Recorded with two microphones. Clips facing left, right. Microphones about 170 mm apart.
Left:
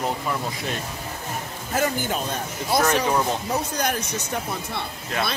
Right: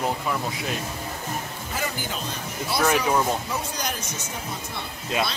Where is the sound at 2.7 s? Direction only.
45° left (ahead or behind).